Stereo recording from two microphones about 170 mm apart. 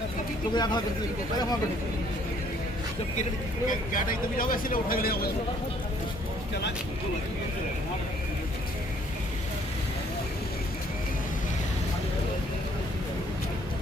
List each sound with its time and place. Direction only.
0.5 s speech: 25° left (ahead or behind)
3.7 s speech: 55° left (ahead or behind)